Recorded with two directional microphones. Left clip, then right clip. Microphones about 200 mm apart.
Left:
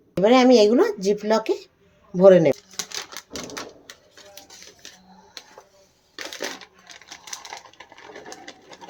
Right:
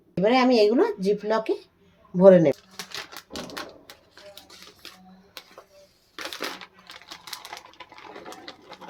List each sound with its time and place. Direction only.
0.2 s speech: 25° left (ahead or behind)
6.1 s crushing: 5° right (ahead or behind)
7.8 s sewing machine: centre (ahead or behind)